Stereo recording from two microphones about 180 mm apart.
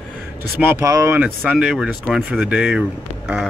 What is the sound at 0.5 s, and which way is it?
Speech, 15° right (ahead or behind).